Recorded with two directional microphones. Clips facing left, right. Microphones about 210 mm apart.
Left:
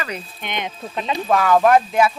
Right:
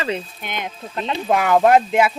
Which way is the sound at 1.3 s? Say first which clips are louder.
Even; 20° right (ahead or behind).